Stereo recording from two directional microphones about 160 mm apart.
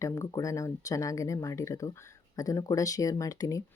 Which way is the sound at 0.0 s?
20° left (ahead or behind).